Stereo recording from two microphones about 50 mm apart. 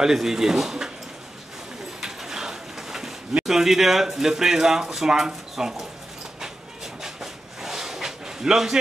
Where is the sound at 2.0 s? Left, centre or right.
Centre.